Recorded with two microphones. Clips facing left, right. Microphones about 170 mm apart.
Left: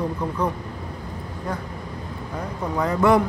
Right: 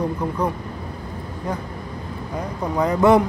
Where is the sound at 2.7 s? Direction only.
20° right (ahead or behind).